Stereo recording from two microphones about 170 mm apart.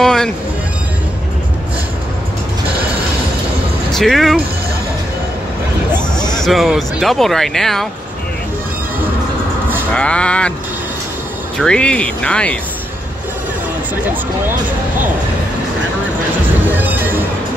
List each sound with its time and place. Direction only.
0.0 s music: centre (ahead or behind)
3.9 s speech: centre (ahead or behind)
5.9 s a sound: 25° left (ahead or behind)
6.4 s speech: centre (ahead or behind)
9.9 s speech: 5° left (ahead or behind)
11.5 s speech: 5° left (ahead or behind)
16.6 s music: 10° right (ahead or behind)